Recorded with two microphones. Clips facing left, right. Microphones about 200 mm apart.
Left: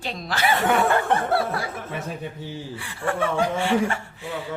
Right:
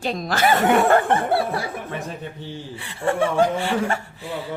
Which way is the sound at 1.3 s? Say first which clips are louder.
Right 2 dB; 25° right (ahead or behind).